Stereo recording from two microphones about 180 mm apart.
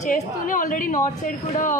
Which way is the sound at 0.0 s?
50° left (ahead or behind).